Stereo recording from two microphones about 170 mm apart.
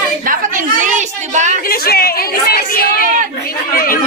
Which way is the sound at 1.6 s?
65° left (ahead or behind).